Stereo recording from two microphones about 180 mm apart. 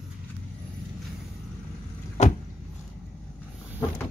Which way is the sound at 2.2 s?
40° left (ahead or behind).